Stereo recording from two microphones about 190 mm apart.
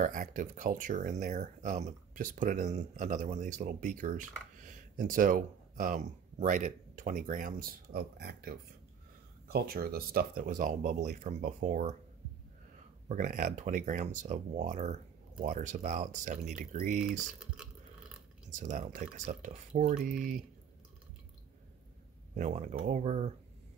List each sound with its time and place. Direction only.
0.0 s speech: 45° right (ahead or behind)
13.1 s speech: 45° right (ahead or behind)
18.5 s speech: 40° right (ahead or behind)
22.3 s speech: 40° right (ahead or behind)